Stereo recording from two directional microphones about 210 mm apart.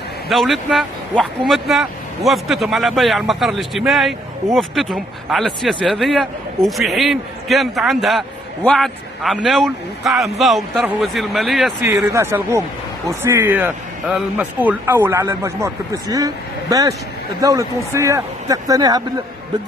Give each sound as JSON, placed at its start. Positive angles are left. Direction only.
{"t": 0.3, "sound": "speech", "side_deg": 0}
{"t": 11.9, "sound": "a man's voice", "side_deg": -15}